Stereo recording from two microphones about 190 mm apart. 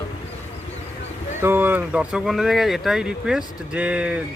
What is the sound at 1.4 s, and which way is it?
Speech, 10° right (ahead or behind).